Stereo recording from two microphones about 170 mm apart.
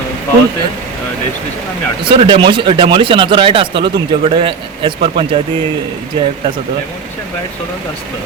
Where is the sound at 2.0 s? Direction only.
30° right (ahead or behind).